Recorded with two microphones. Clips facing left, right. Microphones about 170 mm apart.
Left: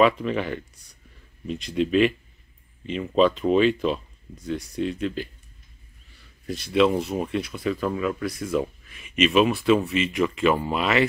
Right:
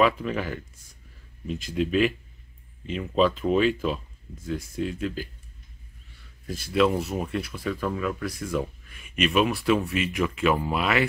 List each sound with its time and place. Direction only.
0.0 s speech: 5° right (ahead or behind)
6.4 s speech: centre (ahead or behind)